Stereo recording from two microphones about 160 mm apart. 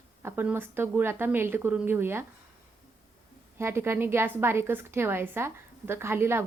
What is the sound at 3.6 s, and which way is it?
A woman's voice, 15° right (ahead or behind).